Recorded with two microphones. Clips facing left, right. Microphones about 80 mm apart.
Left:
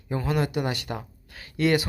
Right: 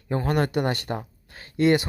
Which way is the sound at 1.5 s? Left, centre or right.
Right.